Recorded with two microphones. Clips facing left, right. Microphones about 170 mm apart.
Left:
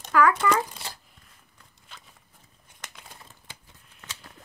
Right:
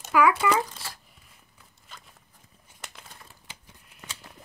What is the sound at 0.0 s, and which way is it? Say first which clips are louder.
Crumpling: even; 10° right (ahead or behind).